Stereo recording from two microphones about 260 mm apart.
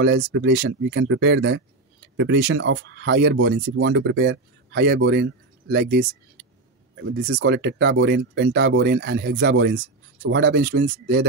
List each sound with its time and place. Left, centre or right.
0.2 s speech: right
0.5 s speech: right